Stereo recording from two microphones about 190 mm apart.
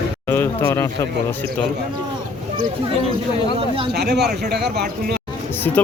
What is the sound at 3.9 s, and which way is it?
A man's voice, 60° right (ahead or behind).